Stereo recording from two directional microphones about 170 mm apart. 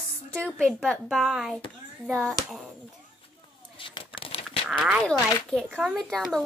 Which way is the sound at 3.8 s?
30° left (ahead or behind).